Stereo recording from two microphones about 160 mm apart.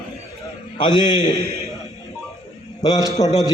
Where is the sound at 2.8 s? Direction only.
20° left (ahead or behind).